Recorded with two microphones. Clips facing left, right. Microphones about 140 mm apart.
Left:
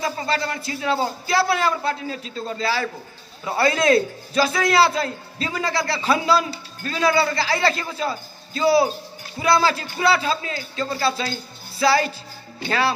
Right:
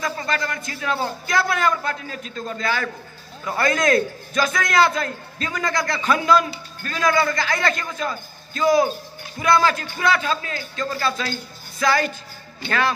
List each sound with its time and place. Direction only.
0.0 s a man's voice: 30° left (ahead or behind)